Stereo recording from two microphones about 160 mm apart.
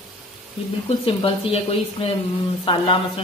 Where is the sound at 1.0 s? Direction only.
35° left (ahead or behind).